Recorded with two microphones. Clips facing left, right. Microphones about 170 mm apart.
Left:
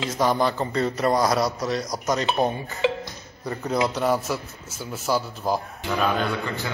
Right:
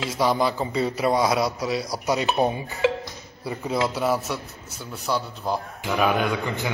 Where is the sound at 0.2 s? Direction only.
5° right (ahead or behind).